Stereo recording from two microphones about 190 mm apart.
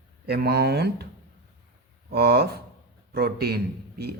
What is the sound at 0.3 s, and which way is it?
Speech, 55° right (ahead or behind).